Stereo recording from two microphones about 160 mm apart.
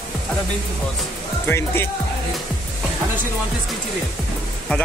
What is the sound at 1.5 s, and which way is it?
Speech, 15° left (ahead or behind).